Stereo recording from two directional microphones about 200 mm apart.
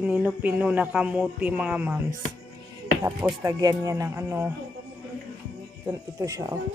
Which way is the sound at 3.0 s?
15° right (ahead or behind).